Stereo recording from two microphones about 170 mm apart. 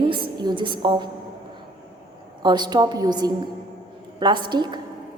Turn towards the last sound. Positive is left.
turn(degrees=-25)  # may be behind; listen again after turning